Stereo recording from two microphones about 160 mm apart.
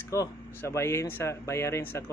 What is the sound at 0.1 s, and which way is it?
Speech, 20° left (ahead or behind).